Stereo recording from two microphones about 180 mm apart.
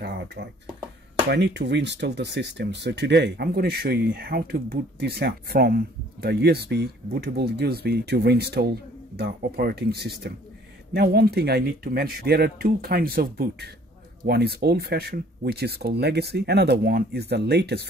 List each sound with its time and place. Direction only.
0.0 s speech: 65° right (ahead or behind)